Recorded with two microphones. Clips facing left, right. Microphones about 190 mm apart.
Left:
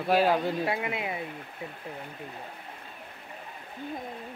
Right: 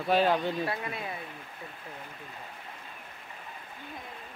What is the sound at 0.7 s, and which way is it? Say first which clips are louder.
Speech: left 5 dB; 20° left (ahead or behind).